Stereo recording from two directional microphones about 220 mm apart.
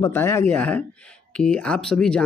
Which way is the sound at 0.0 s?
10° left (ahead or behind).